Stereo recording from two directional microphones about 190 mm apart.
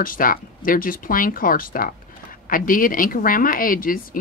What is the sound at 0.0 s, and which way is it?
Speech, 45° left (ahead or behind).